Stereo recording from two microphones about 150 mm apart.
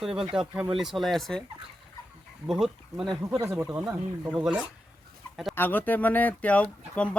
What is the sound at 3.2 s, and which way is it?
Speech, 20° right (ahead or behind).